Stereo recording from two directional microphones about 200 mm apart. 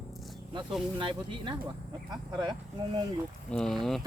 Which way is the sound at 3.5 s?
5° left (ahead or behind).